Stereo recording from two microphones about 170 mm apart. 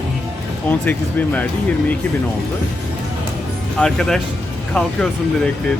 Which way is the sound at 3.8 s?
5° left (ahead or behind).